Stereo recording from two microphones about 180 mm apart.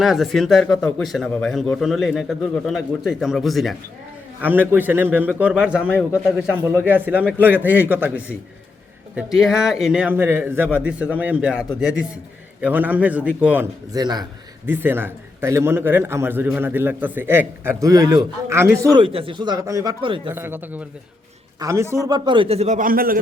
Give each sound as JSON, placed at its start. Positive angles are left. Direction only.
{"t": 0.0, "sound": "speech", "side_deg": 0}
{"t": 4.4, "sound": "speech", "side_deg": -10}
{"t": 5.9, "sound": "speech", "side_deg": 10}
{"t": 6.2, "sound": "speech", "side_deg": -5}
{"t": 13.9, "sound": "speech", "side_deg": -25}
{"t": 14.7, "sound": "speech", "side_deg": -10}
{"t": 20.2, "sound": "a man's voice", "side_deg": -10}